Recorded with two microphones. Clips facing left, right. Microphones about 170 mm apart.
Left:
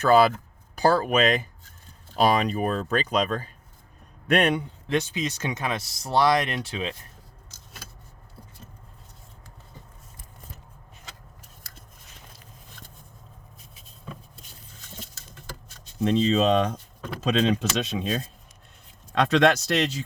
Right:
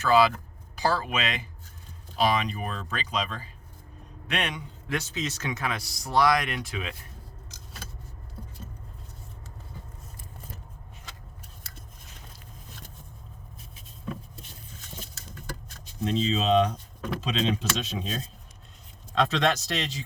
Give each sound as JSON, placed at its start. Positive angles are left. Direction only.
{"t": 0.0, "sound": "speech", "side_deg": 50}
{"t": 4.9, "sound": "speech", "side_deg": 20}
{"t": 16.0, "sound": "speech", "side_deg": 55}
{"t": 17.6, "sound": "speech", "side_deg": 65}